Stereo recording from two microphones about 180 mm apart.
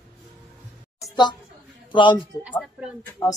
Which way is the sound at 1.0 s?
25° left (ahead or behind).